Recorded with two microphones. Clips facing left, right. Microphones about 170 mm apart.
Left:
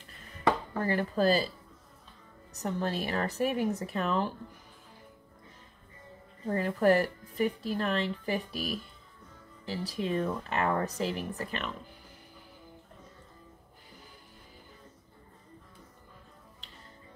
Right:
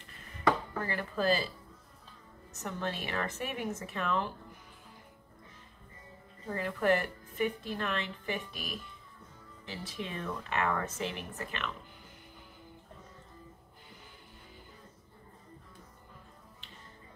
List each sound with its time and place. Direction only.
0.8 s speech: 40° left (ahead or behind)
2.5 s speech: 35° left (ahead or behind)
6.5 s speech: 40° left (ahead or behind)